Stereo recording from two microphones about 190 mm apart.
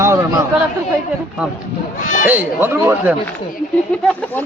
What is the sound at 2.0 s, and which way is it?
Speech, 40° left (ahead or behind).